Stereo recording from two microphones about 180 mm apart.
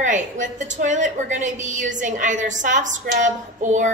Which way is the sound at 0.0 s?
45° right (ahead or behind).